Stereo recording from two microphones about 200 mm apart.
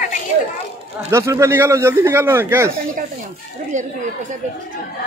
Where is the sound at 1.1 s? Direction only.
15° right (ahead or behind).